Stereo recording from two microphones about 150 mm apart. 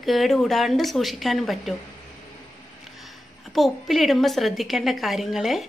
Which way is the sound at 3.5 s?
Centre (ahead or behind).